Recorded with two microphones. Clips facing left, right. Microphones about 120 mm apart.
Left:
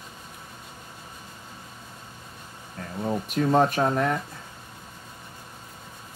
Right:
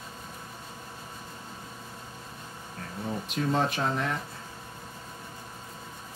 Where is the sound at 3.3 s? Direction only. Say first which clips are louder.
Left 6 dB; 50° left (ahead or behind).